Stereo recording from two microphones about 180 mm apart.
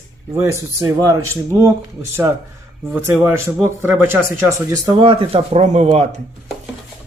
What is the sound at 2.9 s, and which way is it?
Speech, 10° right (ahead or behind).